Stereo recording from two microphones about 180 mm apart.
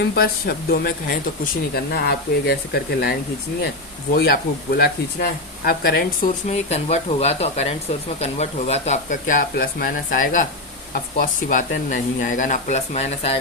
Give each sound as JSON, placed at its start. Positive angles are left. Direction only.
{"t": 0.0, "sound": "speech", "side_deg": 60}
{"t": 6.5, "sound": "speech", "side_deg": 35}